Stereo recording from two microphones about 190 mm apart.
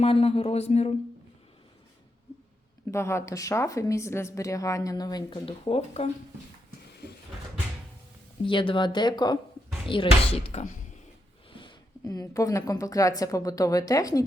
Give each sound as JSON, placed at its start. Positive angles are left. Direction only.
{"t": 0.0, "sound": "a man's voice", "side_deg": 30}
{"t": 2.9, "sound": "a woman's voice", "side_deg": 15}
{"t": 8.4, "sound": "a man's voice", "side_deg": 25}